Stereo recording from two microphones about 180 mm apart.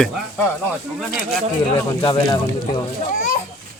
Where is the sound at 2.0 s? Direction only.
20° left (ahead or behind).